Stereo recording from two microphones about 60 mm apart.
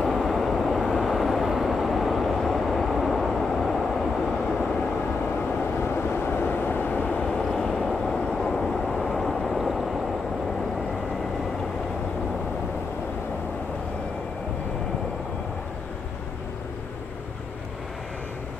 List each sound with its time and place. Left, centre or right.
0.0 s vehicle: centre
5.8 s vehicle: left
7.2 s vehicle: centre